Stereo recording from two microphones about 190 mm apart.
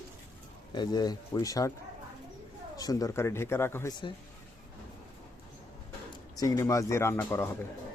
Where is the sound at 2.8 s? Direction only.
20° left (ahead or behind).